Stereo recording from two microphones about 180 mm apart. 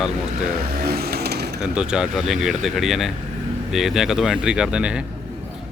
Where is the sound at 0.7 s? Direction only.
60° right (ahead or behind).